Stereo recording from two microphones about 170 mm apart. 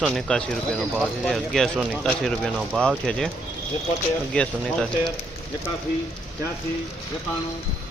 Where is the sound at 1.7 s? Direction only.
10° right (ahead or behind).